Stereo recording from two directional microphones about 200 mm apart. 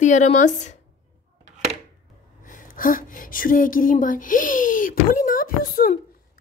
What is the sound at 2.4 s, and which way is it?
Speech, 45° left (ahead or behind).